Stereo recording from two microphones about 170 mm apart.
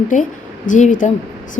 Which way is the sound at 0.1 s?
50° left (ahead or behind).